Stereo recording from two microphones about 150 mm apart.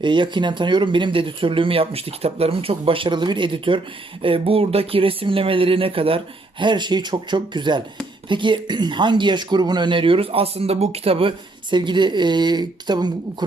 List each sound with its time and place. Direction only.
0.0 s speech: 30° right (ahead or behind)